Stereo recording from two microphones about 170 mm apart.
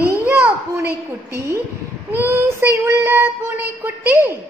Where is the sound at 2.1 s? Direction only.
15° right (ahead or behind).